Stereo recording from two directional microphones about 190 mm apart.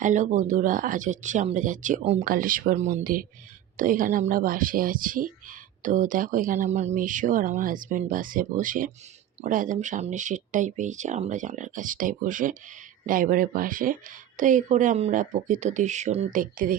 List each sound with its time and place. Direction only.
0.0 s speech: 40° right (ahead or behind)